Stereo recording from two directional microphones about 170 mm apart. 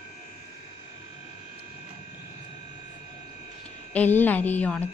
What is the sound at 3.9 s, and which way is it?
Speech, 10° left (ahead or behind).